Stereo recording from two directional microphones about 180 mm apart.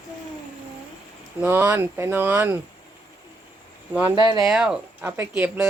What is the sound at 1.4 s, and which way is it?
Speech, 10° right (ahead or behind).